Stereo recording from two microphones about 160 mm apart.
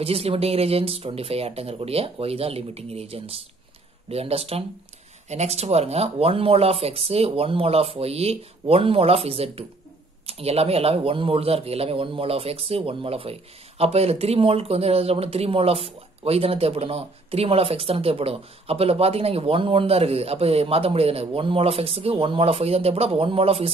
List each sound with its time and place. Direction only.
0.0 s a man's voice: 35° right (ahead or behind)